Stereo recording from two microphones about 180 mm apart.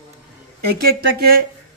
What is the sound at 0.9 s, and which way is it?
Speech, 60° right (ahead or behind).